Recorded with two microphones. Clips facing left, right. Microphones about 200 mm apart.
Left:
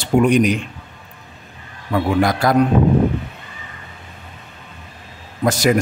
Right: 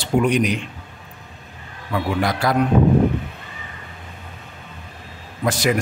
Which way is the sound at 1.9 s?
45° left (ahead or behind).